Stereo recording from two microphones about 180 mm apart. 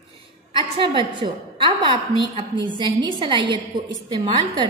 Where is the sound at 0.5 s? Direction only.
25° right (ahead or behind).